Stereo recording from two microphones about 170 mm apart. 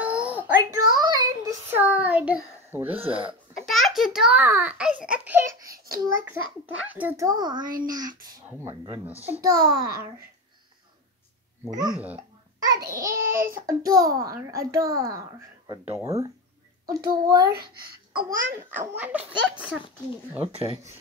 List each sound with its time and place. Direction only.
0.0 s a sound: 10° right (ahead or behind)
0.6 s child singing: 20° right (ahead or behind)
3.5 s a child's voice: centre (ahead or behind)
7.2 s a child's voice: 25° right (ahead or behind)
11.8 s a child's voice: 10° right (ahead or behind)
13.1 s a child's voice: 55° right (ahead or behind)
13.7 s a child's voice: 20° right (ahead or behind)
18.5 s a child's voice: 10° right (ahead or behind)
20.5 s speech: 35° right (ahead or behind)